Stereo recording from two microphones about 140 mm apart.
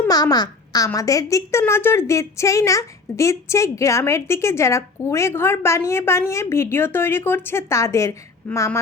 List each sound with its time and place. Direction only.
0.1 s a child's voice: 30° left (ahead or behind)